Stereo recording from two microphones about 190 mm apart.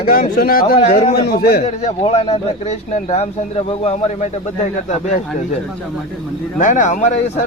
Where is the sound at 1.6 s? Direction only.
35° left (ahead or behind).